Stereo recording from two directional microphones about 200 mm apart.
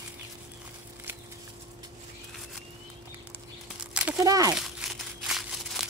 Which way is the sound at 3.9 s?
5° right (ahead or behind).